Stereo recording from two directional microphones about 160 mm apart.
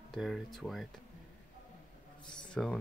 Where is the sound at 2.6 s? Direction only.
5° left (ahead or behind).